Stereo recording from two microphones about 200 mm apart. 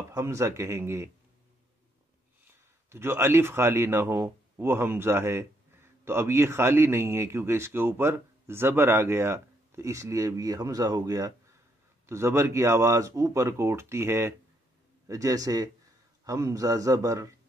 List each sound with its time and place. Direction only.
0.1 s speech: 15° right (ahead or behind)
2.4 s speech: 10° right (ahead or behind)